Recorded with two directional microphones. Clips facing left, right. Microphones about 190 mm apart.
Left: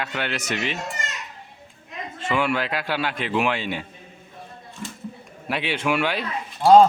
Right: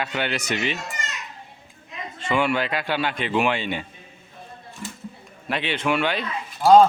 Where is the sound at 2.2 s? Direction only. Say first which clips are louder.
Right 1 dB; 5° left (ahead or behind).